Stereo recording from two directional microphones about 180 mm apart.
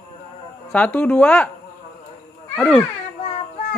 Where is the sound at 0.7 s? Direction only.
5° left (ahead or behind).